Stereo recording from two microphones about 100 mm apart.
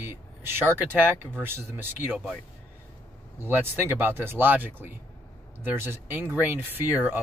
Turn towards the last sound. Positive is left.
turn(degrees=-20)  # may be behind; listen again after turning